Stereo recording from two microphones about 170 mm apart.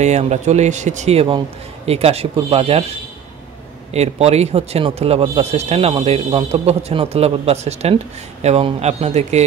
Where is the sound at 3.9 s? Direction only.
40° right (ahead or behind).